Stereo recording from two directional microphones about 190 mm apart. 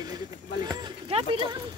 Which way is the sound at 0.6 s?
20° right (ahead or behind).